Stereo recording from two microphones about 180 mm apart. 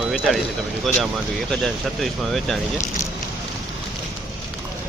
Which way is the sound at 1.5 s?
Centre (ahead or behind).